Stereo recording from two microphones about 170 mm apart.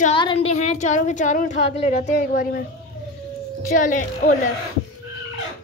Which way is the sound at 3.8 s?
50° left (ahead or behind).